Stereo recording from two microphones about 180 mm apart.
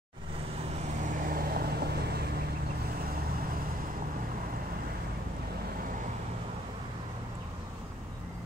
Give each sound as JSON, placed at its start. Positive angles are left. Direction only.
{"t": 1.2, "sound": "vehicle", "side_deg": -55}